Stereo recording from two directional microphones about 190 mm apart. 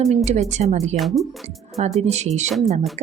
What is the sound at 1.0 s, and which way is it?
Speech, centre (ahead or behind).